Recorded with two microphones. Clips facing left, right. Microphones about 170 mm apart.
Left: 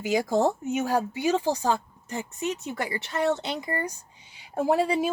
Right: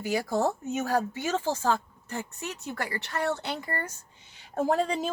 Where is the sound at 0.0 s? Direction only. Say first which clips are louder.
Left 4 dB; 15° left (ahead or behind).